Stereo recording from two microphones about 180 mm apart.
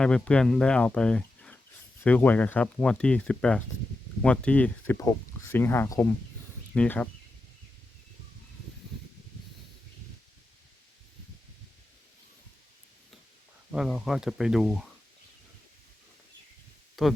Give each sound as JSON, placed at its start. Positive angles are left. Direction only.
{"t": 0.0, "sound": "speech", "side_deg": 5}
{"t": 13.7, "sound": "speech", "side_deg": 0}
{"t": 17.0, "sound": "speech", "side_deg": 0}